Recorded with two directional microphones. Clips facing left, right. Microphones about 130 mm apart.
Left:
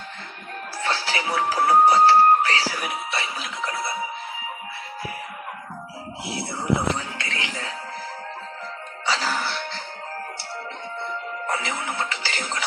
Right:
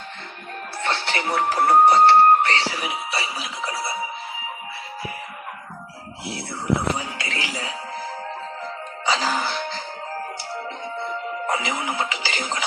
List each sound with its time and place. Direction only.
0.8 s speech: 5° left (ahead or behind)
1.9 s music: 5° left (ahead or behind)
6.9 s music: 10° right (ahead or behind)
9.0 s music: 15° right (ahead or behind)
11.4 s music: 15° right (ahead or behind)